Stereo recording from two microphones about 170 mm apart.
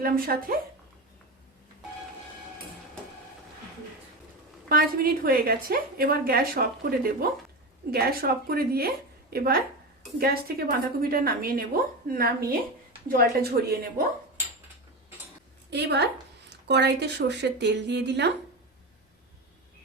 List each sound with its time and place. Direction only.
0.0 s a woman's voice: 60° right (ahead or behind)
4.7 s a woman's voice: 60° right (ahead or behind)
15.7 s a woman's voice: 85° right